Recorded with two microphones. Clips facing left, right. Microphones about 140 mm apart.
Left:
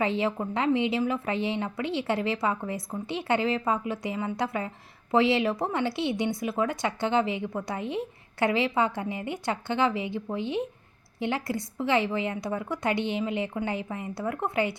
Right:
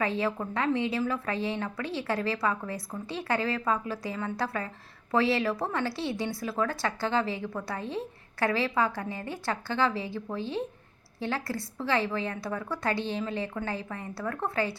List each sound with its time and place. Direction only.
0.0 s a woman's voice: 25° left (ahead or behind)